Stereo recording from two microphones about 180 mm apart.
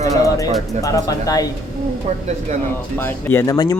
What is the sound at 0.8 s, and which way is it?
Speech, 20° left (ahead or behind).